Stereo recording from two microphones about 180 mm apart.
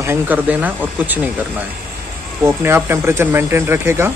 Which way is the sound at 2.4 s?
15° right (ahead or behind).